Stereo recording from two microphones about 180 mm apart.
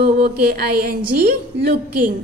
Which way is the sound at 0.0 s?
55° right (ahead or behind).